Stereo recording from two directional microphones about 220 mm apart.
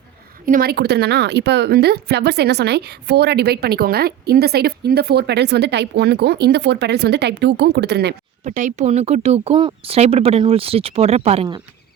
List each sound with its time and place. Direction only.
0.4 s speech: 40° right (ahead or behind)
8.4 s speech: 35° right (ahead or behind)